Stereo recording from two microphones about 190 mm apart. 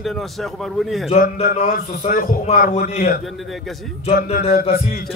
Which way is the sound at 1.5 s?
35° left (ahead or behind).